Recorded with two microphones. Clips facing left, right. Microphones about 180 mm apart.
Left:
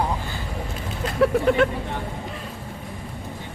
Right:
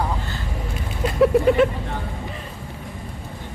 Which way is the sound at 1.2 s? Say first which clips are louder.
Right 3 dB; 5° right (ahead or behind).